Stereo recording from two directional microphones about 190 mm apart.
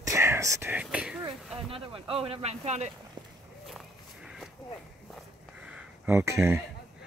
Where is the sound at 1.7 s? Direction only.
30° right (ahead or behind).